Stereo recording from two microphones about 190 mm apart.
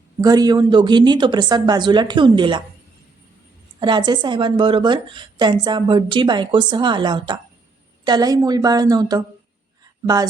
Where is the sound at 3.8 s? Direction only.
25° right (ahead or behind).